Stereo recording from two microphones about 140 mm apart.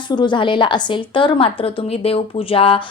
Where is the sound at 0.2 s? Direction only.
35° left (ahead or behind).